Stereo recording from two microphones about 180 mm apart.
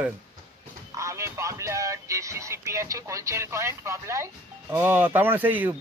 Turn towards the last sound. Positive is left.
turn(degrees=-10)  # may be behind; listen again after turning